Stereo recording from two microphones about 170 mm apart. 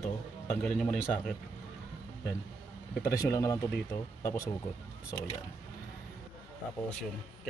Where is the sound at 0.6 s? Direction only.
5° left (ahead or behind).